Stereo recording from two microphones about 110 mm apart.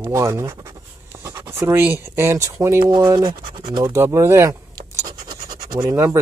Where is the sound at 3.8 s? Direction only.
25° right (ahead or behind).